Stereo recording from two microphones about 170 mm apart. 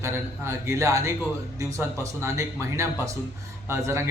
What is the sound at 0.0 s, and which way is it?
Speech, 15° right (ahead or behind).